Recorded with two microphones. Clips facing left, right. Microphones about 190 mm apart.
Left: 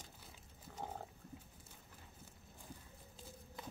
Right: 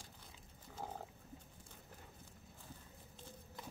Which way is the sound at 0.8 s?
Centre (ahead or behind).